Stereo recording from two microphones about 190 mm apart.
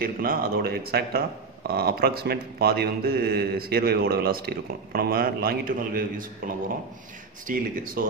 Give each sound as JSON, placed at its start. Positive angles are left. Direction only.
{"t": 0.0, "sound": "speech", "side_deg": -50}